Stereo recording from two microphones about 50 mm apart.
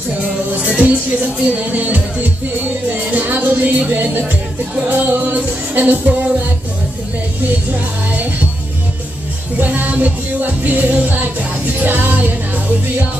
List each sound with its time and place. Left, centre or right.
0.6 s music: right
9.6 s music: right